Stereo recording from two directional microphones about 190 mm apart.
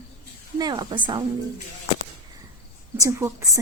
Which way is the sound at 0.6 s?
25° right (ahead or behind).